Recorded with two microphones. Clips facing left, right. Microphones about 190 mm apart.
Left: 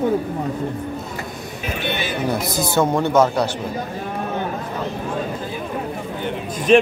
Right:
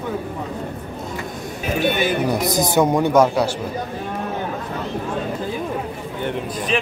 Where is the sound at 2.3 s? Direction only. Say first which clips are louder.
Right 2 dB; 20° right (ahead or behind).